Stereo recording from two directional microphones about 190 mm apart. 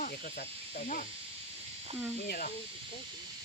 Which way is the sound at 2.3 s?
50° left (ahead or behind).